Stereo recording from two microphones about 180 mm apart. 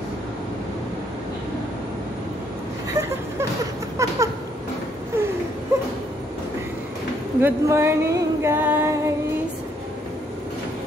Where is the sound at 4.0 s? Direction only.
15° right (ahead or behind).